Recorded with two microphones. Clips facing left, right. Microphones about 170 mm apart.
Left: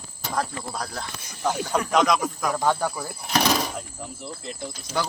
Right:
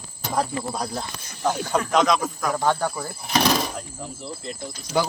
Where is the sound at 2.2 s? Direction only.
Centre (ahead or behind).